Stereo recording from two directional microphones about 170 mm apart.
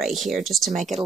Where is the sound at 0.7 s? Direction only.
45° right (ahead or behind).